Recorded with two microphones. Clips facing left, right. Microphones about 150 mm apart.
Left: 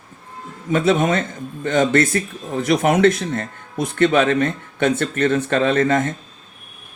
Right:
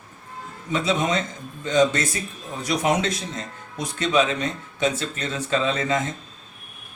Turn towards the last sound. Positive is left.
turn(degrees=55)  # may be behind; listen again after turning